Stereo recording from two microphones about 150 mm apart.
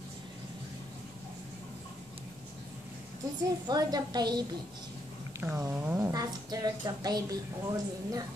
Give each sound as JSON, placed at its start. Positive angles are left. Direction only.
{"t": 3.6, "sound": "a woman's voice", "side_deg": -25}
{"t": 5.4, "sound": "a woman's voice", "side_deg": -15}